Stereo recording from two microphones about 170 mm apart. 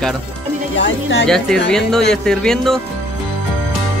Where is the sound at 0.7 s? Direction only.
90° left.